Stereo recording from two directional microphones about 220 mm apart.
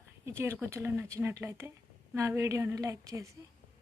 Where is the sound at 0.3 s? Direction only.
10° right (ahead or behind).